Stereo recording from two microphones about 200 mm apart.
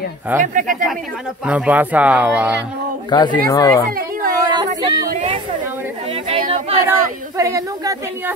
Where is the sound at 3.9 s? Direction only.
45° right (ahead or behind).